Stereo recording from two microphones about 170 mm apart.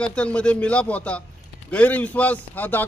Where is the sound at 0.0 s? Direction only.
5° left (ahead or behind).